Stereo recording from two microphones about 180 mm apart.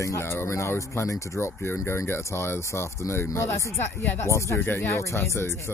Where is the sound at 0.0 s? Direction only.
15° left (ahead or behind).